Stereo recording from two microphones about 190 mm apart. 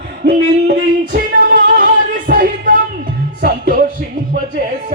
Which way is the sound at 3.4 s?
50° right (ahead or behind).